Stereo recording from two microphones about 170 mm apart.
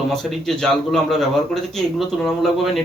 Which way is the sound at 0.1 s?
Centre (ahead or behind).